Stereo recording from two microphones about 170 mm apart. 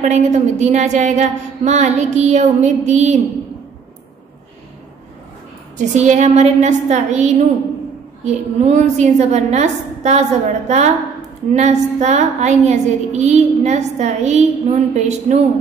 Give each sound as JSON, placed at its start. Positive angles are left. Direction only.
{"t": 0.0, "sound": "a woman's voice", "side_deg": -45}
{"t": 5.8, "sound": "a woman's voice", "side_deg": -45}